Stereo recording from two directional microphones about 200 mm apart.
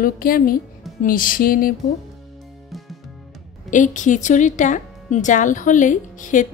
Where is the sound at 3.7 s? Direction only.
40° left (ahead or behind).